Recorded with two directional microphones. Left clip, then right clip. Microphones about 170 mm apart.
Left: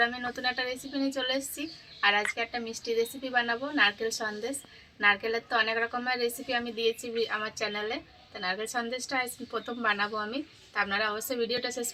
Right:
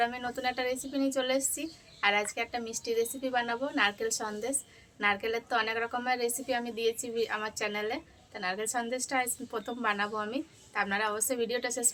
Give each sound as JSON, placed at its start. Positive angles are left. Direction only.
{"t": 0.0, "sound": "a woman's voice", "side_deg": -30}